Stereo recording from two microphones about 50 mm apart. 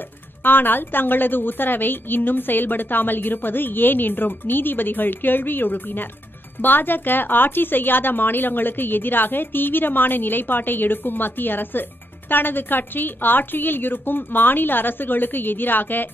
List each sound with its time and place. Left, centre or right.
0.4 s speech: left